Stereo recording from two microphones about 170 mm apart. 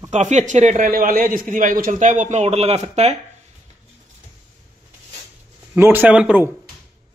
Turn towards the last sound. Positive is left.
turn(degrees=-5)  # may be behind; listen again after turning